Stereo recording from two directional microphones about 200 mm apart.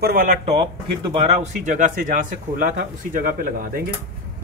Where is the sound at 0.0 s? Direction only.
45° right (ahead or behind).